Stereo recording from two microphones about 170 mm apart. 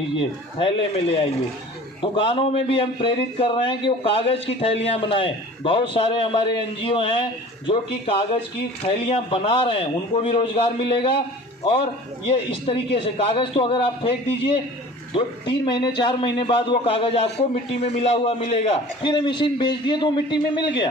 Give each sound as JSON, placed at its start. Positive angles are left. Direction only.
{"t": 0.2, "sound": "a man's voice", "side_deg": 30}